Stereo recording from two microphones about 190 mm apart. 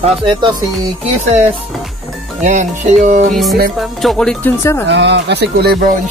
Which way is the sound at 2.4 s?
40° right (ahead or behind).